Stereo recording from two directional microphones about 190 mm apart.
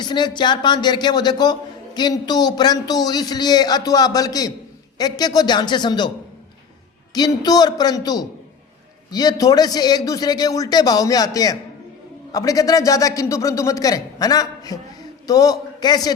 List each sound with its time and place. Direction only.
0.0 s a man's voice: 25° left (ahead or behind)
7.1 s a man's voice: 20° left (ahead or behind)